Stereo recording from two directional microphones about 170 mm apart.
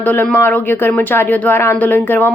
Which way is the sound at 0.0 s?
10° left (ahead or behind).